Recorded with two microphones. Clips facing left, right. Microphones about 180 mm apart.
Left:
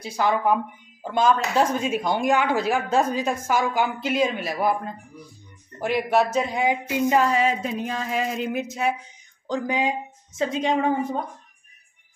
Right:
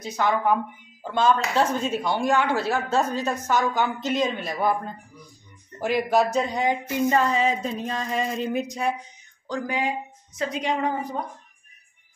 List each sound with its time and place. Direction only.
0.0 s speech: 10° left (ahead or behind)
5.8 s speech: centre (ahead or behind)
7.8 s a sound: 5° left (ahead or behind)
9.5 s a woman's voice: 20° left (ahead or behind)